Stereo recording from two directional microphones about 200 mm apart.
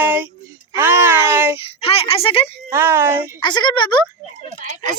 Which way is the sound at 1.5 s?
30° left (ahead or behind).